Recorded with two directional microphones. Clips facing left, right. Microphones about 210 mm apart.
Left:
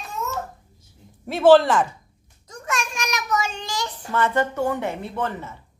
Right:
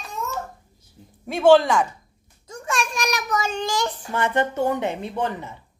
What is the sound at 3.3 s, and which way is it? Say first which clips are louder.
Child singing: right 1 dB; 40° right (ahead or behind).